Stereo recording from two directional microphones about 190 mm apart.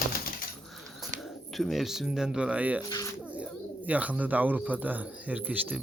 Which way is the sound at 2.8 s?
20° left (ahead or behind).